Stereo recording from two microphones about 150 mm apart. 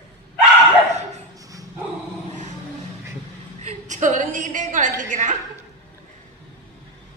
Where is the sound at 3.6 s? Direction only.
50° right (ahead or behind).